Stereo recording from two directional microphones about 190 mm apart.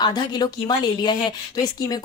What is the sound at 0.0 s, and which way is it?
A woman's voice, 20° left (ahead or behind).